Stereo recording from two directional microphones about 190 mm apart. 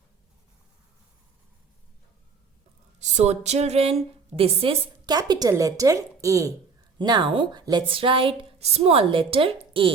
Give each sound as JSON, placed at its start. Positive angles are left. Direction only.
{"t": 3.0, "sound": "a woman's voice", "side_deg": -35}